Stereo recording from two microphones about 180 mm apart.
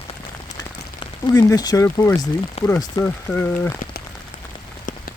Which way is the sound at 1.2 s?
20° left (ahead or behind).